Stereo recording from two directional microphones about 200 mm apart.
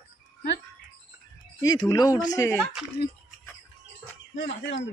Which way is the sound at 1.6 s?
20° left (ahead or behind).